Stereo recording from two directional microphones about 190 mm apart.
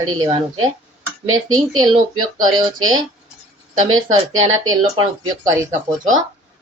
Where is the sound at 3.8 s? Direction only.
90° right.